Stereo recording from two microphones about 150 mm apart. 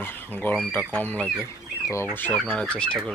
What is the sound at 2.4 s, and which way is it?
Speech, centre (ahead or behind).